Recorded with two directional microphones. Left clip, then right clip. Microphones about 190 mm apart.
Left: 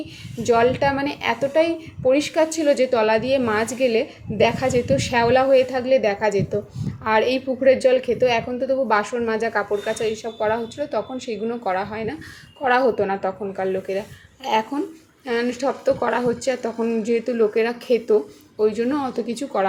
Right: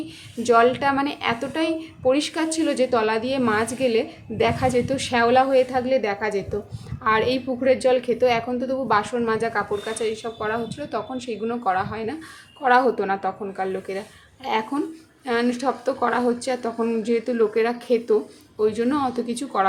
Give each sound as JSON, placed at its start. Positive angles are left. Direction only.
{"t": 0.4, "sound": "a woman's voice", "side_deg": 0}